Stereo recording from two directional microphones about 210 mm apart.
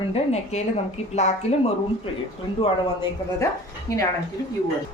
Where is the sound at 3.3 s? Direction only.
15° left (ahead or behind).